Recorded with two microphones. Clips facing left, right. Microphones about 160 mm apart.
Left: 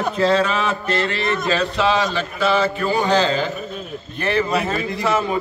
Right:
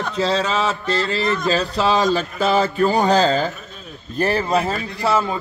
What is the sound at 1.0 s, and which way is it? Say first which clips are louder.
Speech: right 1 dB; 35° right (ahead or behind).